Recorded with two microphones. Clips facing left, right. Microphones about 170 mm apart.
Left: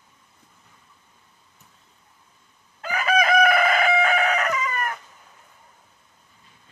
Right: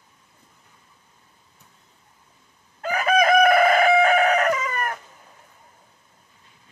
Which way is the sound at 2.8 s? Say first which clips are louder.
Right 3 dB; 45° right (ahead or behind).